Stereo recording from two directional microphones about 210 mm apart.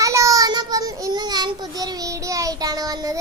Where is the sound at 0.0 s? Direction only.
15° right (ahead or behind).